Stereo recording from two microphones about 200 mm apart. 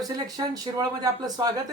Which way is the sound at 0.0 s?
20° right (ahead or behind).